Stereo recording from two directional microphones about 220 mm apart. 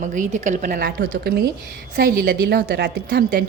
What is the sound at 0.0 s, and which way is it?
A woman's voice, 35° right (ahead or behind).